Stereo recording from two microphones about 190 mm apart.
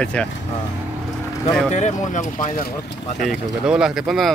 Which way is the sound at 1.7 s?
40° left (ahead or behind).